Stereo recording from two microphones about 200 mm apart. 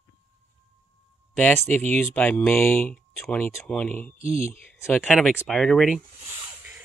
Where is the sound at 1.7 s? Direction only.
10° left (ahead or behind).